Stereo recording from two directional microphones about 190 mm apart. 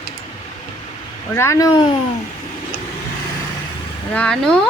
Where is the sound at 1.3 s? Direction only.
15° left (ahead or behind).